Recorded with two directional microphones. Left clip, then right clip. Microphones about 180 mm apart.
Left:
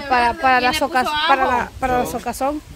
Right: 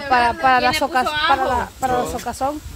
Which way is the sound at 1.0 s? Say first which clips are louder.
Even; 50° left (ahead or behind).